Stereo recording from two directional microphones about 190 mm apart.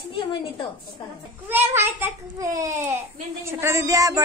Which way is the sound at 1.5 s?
10° right (ahead or behind).